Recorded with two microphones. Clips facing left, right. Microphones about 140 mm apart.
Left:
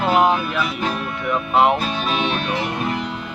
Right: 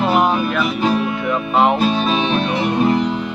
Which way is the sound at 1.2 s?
10° left (ahead or behind).